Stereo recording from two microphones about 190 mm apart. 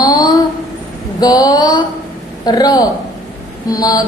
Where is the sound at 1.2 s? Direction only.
20° left (ahead or behind).